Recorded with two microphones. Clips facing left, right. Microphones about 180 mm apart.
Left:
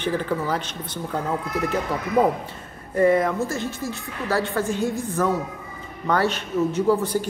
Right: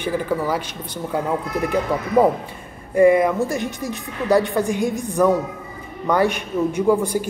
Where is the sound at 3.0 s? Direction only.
10° right (ahead or behind).